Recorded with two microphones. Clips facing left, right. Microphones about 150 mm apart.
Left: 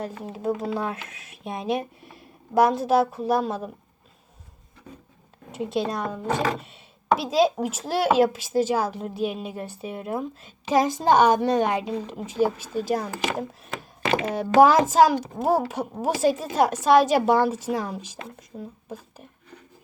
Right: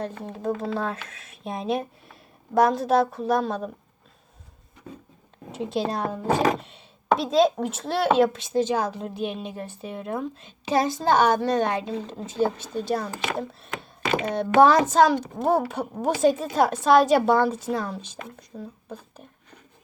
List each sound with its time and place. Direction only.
0.0 s speech: 5° left (ahead or behind)
5.5 s a child's voice: centre (ahead or behind)